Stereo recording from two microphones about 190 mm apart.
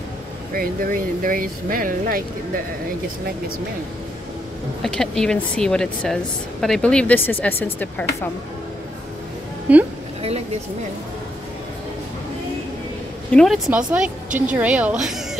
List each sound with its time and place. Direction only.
0.6 s speech: 45° right (ahead or behind)
4.8 s speech: 5° left (ahead or behind)
9.7 s a woman's voice: 10° right (ahead or behind)
13.3 s a woman's voice: 5° left (ahead or behind)